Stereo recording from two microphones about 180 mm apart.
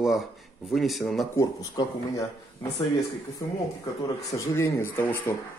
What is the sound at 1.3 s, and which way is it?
Speech, 20° left (ahead or behind).